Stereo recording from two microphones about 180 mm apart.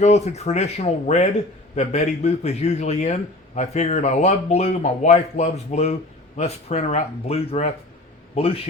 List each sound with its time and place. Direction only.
0.0 s speech: 40° left (ahead or behind)